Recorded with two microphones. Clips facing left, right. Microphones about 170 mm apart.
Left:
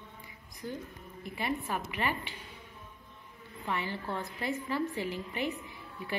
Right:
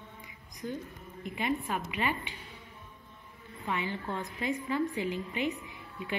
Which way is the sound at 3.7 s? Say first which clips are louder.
Right 1 dB; 20° right (ahead or behind).